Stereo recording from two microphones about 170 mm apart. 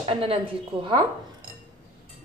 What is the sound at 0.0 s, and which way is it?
Speech, 30° right (ahead or behind).